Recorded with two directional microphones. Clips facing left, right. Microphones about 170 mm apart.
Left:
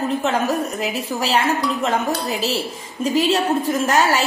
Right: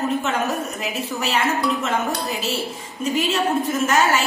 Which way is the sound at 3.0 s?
35° left (ahead or behind).